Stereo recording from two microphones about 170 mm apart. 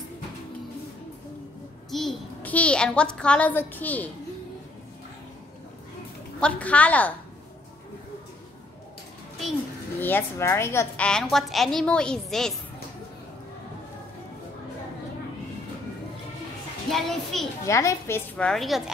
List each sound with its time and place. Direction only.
1.9 s a child's voice: centre (ahead or behind)
6.4 s speech: 10° left (ahead or behind)
9.9 s speech: 10° left (ahead or behind)
11.1 s a woman's voice: 5° left (ahead or behind)
16.9 s a woman's voice: centre (ahead or behind)
17.6 s speech: 15° left (ahead or behind)
18.5 s a woman's voice: centre (ahead or behind)